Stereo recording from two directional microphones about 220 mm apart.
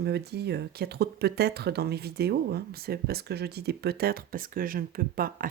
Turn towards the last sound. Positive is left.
turn(degrees=-40)  # may be behind; listen again after turning